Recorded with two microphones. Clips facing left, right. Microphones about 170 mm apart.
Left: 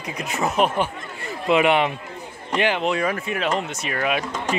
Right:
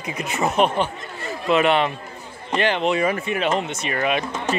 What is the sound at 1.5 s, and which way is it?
Speech, 15° left (ahead or behind).